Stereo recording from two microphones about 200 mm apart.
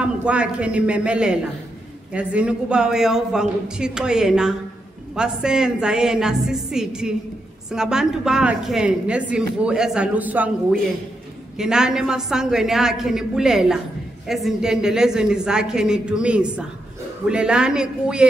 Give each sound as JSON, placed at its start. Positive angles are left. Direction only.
{"t": 0.0, "sound": "a man's voice", "side_deg": -5}